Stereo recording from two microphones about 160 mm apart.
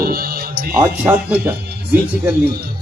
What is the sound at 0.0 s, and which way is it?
Music, 70° right (ahead or behind).